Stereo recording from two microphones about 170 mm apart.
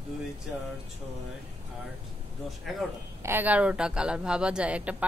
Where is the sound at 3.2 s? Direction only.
10° right (ahead or behind).